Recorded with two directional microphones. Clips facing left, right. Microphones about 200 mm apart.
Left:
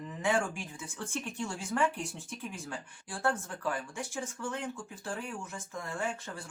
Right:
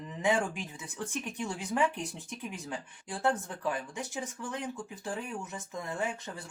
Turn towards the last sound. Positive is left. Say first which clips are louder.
# right 1 dB
turn(degrees=-20)  # may be behind; listen again after turning